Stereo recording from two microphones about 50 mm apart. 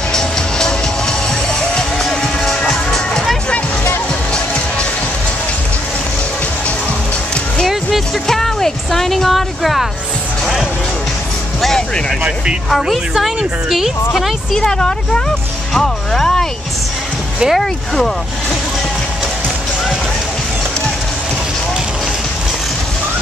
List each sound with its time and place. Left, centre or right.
0.1 s music: centre
8.3 s music: centre
12.6 s speech: centre
14.5 s speech: centre
17.5 s speech: centre